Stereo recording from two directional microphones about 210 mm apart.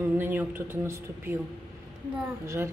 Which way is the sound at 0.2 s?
10° right (ahead or behind).